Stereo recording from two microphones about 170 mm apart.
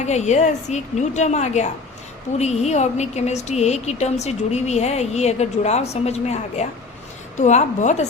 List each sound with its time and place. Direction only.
0.0 s a woman's voice: 40° left (ahead or behind)